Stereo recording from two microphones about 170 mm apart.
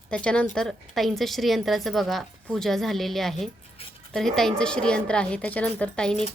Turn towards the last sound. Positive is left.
turn(degrees=5)  # may be behind; listen again after turning